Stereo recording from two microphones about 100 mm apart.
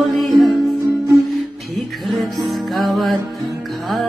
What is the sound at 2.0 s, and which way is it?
Music, centre (ahead or behind).